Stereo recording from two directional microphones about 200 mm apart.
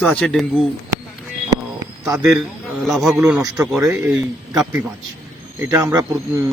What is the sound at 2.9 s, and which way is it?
Speech, centre (ahead or behind).